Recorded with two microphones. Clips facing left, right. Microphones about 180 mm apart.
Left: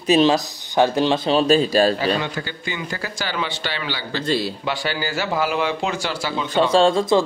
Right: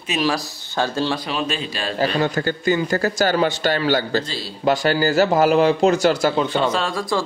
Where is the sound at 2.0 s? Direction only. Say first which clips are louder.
Right 3 dB; 45° right (ahead or behind).